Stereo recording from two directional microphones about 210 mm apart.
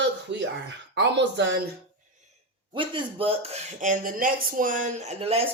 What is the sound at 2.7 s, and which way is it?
Speech, 25° right (ahead or behind).